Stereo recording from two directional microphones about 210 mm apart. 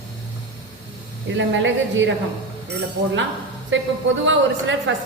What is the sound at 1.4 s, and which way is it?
Speech, 60° right (ahead or behind).